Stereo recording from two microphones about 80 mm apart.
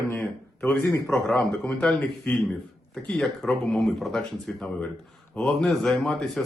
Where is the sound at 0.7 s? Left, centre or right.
Centre.